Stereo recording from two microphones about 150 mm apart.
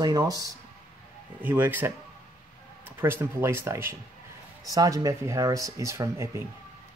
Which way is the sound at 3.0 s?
15° right (ahead or behind).